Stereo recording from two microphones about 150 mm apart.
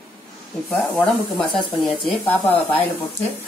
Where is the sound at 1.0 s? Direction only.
5° left (ahead or behind).